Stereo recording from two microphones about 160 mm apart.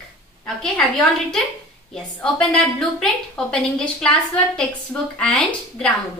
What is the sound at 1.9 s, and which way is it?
A woman's voice, 5° left (ahead or behind).